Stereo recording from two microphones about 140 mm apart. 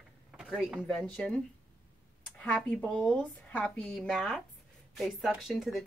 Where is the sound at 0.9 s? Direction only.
5° left (ahead or behind).